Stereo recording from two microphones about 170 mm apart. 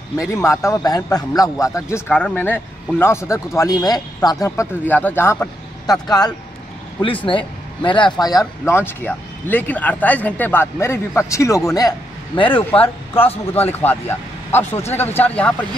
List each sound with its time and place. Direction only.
0.3 s a man's voice: 15° left (ahead or behind)
2.0 s a man's voice: 10° left (ahead or behind); by 12.6 s 30° left (ahead or behind)
13.5 s speech: 10° left (ahead or behind)